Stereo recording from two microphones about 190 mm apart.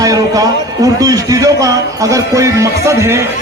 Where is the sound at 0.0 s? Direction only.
20° right (ahead or behind).